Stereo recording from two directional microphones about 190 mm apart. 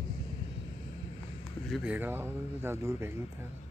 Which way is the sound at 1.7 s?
5° right (ahead or behind).